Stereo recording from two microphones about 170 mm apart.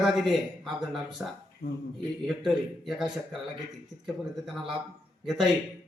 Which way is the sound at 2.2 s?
Centre (ahead or behind).